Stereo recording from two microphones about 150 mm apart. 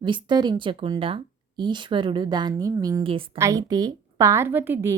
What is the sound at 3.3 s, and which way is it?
Speech, 20° right (ahead or behind).